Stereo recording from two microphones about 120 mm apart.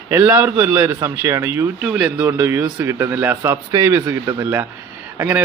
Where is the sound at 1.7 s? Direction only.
10° right (ahead or behind).